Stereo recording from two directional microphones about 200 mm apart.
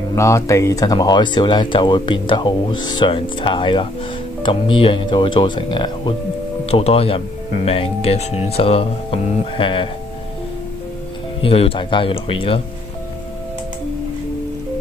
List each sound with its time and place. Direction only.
0.1 s speech: 15° left (ahead or behind)
11.4 s speech: 30° left (ahead or behind)